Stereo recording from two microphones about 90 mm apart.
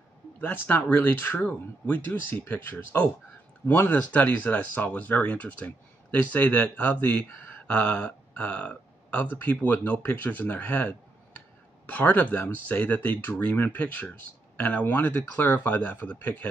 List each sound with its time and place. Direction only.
0.4 s speech: 20° left (ahead or behind)